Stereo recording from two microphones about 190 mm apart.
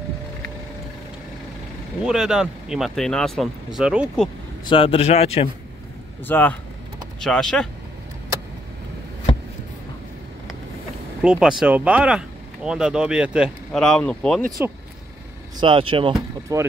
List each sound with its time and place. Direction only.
2.0 s speech: 5° right (ahead or behind)
4.6 s speech: 30° left (ahead or behind)
6.2 s speech: 10° left (ahead or behind)
11.2 s speech: 5° right (ahead or behind)
15.6 s speech: 25° right (ahead or behind)